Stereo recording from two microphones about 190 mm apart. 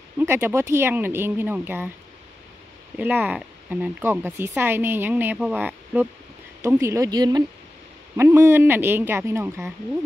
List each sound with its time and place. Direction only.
0.2 s speech: 10° right (ahead or behind)
3.0 s speech: 10° right (ahead or behind)
6.6 s speech: 15° right (ahead or behind)